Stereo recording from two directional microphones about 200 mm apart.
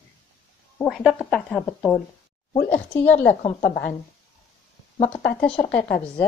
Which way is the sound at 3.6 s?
50° left (ahead or behind).